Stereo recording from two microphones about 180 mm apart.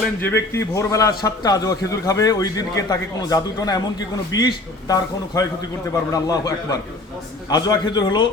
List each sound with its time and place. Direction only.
0.2 s a man's voice: 10° left (ahead or behind)